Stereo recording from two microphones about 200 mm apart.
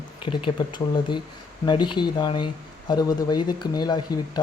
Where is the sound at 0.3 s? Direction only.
25° left (ahead or behind).